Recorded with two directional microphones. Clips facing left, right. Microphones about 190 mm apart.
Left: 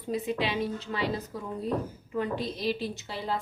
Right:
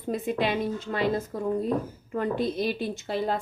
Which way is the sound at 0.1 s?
50° right (ahead or behind).